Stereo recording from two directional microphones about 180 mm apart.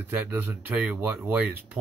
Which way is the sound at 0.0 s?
10° right (ahead or behind).